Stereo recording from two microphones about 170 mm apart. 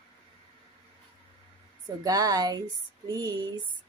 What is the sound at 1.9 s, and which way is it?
Speech, 25° right (ahead or behind).